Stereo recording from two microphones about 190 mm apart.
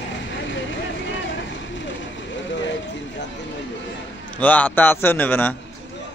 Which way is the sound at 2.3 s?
75° left (ahead or behind).